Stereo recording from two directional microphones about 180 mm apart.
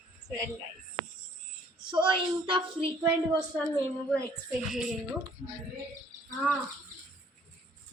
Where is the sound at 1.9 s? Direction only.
25° right (ahead or behind).